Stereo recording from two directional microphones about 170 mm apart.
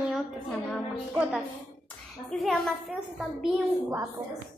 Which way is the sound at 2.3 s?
Centre (ahead or behind).